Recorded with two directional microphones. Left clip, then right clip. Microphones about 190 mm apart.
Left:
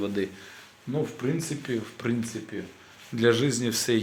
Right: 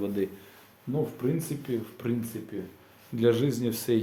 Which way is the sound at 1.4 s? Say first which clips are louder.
Left 2 dB; 5° left (ahead or behind).